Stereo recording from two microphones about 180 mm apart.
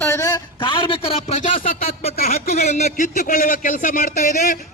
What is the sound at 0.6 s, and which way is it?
A man's voice, 25° left (ahead or behind).